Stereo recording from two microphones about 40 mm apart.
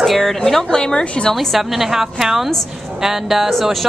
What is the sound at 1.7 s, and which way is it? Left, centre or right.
Speech, centre.